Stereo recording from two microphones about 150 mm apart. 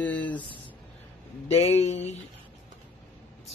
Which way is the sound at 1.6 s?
45° left (ahead or behind).